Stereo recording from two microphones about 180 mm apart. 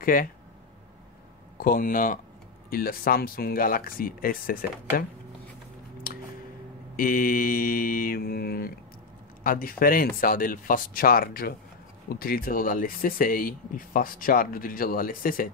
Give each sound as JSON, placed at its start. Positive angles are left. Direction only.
{"t": 0.0, "sound": "speech", "side_deg": 50}
{"t": 1.6, "sound": "speech", "side_deg": 50}
{"t": 7.0, "sound": "speech", "side_deg": 50}